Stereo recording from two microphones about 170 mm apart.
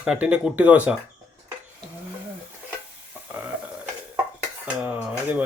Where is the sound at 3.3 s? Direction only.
10° right (ahead or behind).